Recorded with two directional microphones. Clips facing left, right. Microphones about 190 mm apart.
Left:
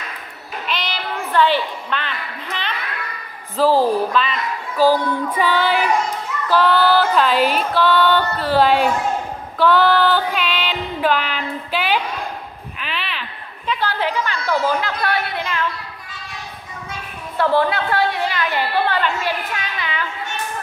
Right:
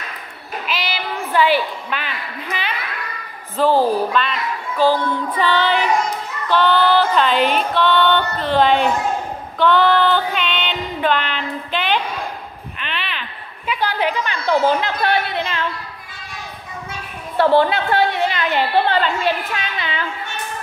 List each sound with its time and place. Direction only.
0.7 s a woman's voice: 5° right (ahead or behind)
3.5 s music: centre (ahead or behind)
5.4 s child singing: 10° left (ahead or behind)
6.5 s music: 5° left (ahead or behind)
9.6 s female singing: 5° left (ahead or behind)
12.7 s a sound: centre (ahead or behind)
13.7 s chatter: 15° right (ahead or behind)
17.4 s a woman's voice: 25° right (ahead or behind)